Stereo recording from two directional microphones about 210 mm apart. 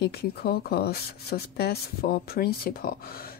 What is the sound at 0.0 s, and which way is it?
Speech, 50° left (ahead or behind).